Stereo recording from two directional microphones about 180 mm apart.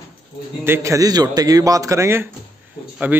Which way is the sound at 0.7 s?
15° right (ahead or behind).